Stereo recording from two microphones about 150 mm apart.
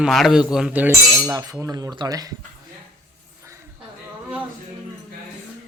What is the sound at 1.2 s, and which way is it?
Cutlery, 25° right (ahead or behind).